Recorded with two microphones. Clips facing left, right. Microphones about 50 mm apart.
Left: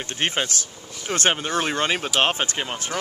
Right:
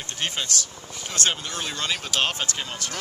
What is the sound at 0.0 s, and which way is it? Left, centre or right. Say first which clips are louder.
Speech: left 5 dB; left.